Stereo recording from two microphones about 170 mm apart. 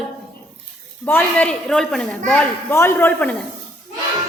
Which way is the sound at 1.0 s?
10° left (ahead or behind).